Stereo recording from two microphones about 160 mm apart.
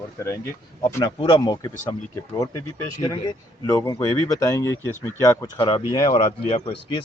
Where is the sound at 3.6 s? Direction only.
20° left (ahead or behind).